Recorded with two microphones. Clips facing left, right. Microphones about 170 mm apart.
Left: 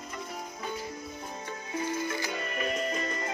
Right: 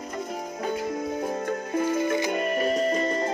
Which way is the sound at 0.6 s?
60° right (ahead or behind).